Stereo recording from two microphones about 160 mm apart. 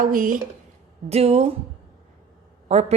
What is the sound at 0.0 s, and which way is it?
Speech, 60° right (ahead or behind).